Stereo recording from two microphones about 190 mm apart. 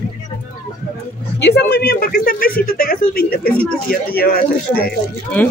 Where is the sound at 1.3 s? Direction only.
60° left (ahead or behind).